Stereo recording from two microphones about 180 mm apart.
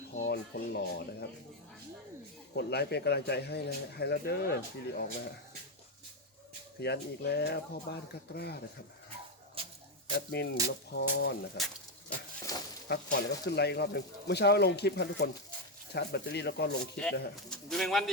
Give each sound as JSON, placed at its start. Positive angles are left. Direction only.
{"t": 0.3, "sound": "speech", "side_deg": 65}
{"t": 2.6, "sound": "speech", "side_deg": 65}
{"t": 6.7, "sound": "speech", "side_deg": 65}
{"t": 9.6, "sound": "a sound", "side_deg": -30}
{"t": 10.1, "sound": "speech", "side_deg": 65}
{"t": 11.5, "sound": "a sound", "side_deg": 0}
{"t": 12.9, "sound": "speech", "side_deg": 65}
{"t": 16.8, "sound": "speech", "side_deg": 5}